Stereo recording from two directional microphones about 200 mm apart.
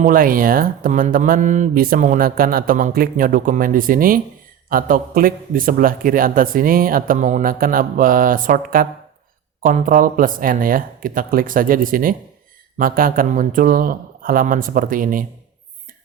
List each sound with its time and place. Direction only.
0.0 s speech: 45° right (ahead or behind)